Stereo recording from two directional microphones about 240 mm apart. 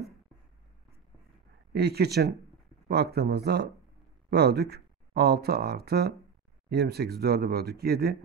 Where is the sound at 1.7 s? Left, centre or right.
Right.